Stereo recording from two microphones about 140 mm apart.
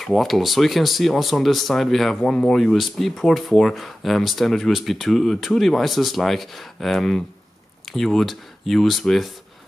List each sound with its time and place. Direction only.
0.0 s speech: centre (ahead or behind)